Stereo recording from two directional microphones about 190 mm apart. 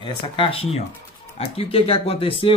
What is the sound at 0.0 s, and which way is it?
Speech, 25° left (ahead or behind).